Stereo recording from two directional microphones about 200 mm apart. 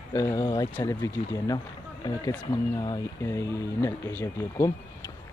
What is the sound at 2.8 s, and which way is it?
Speech, 15° left (ahead or behind).